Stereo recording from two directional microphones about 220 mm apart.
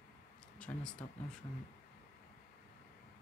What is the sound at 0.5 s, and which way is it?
Speech, 5° left (ahead or behind).